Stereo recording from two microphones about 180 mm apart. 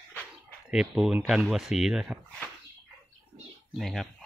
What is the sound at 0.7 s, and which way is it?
Speech, 5° right (ahead or behind).